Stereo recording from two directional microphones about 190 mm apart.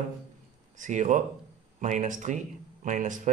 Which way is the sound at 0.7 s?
40° right (ahead or behind).